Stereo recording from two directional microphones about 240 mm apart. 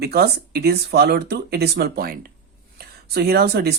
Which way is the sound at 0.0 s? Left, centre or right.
Right.